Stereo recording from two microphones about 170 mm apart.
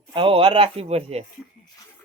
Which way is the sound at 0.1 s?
30° right (ahead or behind).